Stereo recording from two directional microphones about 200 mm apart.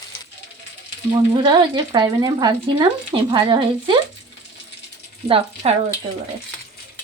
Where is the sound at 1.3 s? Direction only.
20° right (ahead or behind).